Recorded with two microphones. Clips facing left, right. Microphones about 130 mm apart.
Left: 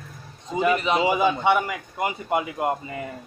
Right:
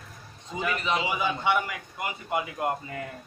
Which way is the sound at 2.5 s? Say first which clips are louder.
Left 4 dB; 15° left (ahead or behind).